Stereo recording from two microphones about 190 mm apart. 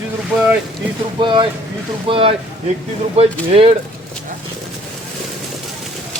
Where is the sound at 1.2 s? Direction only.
25° right (ahead or behind).